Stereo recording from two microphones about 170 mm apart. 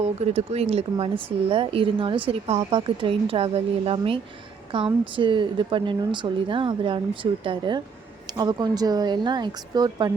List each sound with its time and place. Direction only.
0.2 s speech: 40° right (ahead or behind)